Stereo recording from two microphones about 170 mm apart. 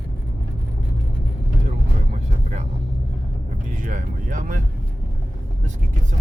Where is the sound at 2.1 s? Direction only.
45° right (ahead or behind).